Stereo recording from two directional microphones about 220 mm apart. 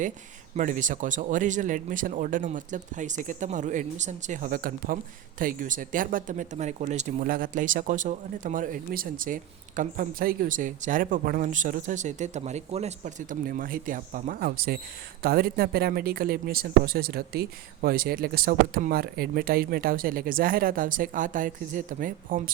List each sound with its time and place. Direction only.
0.5 s speech: 35° right (ahead or behind)